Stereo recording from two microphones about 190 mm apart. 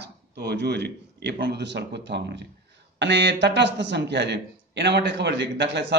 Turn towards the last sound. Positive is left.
turn(degrees=-65)  # may be behind; listen again after turning